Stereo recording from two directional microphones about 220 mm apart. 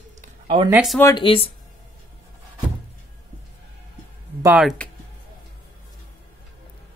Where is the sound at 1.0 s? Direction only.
20° left (ahead or behind).